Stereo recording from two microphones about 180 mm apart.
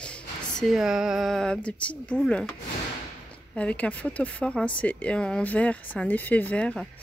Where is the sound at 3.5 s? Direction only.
5° left (ahead or behind).